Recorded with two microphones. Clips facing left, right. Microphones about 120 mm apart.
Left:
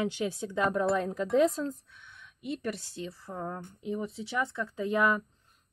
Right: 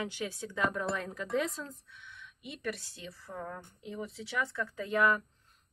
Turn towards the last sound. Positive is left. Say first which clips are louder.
# left 2 dB
turn(degrees=20)  # may be behind; listen again after turning